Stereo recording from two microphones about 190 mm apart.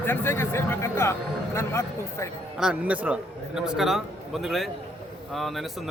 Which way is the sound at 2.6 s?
5° right (ahead or behind).